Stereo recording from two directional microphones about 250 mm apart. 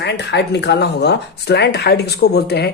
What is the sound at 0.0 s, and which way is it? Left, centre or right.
Speech, left.